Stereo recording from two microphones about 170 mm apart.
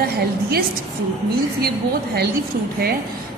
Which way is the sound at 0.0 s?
65° right (ahead or behind).